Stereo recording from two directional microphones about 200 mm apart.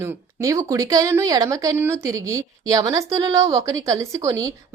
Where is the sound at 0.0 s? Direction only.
15° right (ahead or behind).